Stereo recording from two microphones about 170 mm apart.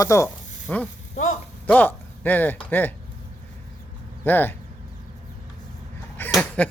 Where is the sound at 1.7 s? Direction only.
10° left (ahead or behind).